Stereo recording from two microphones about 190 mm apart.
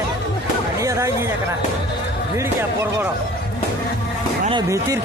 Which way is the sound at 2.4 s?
15° right (ahead or behind).